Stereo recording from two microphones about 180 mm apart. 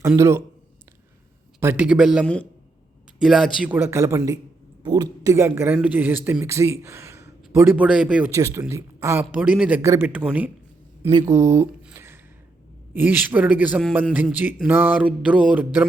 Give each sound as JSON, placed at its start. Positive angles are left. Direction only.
{"t": 0.0, "sound": "speech", "side_deg": -15}
{"t": 1.5, "sound": "a man's voice", "side_deg": -10}
{"t": 8.3, "sound": "speech", "side_deg": -15}
{"t": 11.1, "sound": "speech", "side_deg": -20}
{"t": 11.9, "sound": "a sound", "side_deg": -10}
{"t": 12.9, "sound": "speech", "side_deg": -10}